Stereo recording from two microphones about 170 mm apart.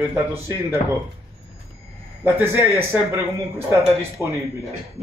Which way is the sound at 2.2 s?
10° right (ahead or behind).